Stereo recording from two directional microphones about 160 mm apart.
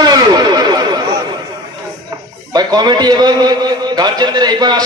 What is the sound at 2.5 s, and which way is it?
A man's voice, 25° right (ahead or behind).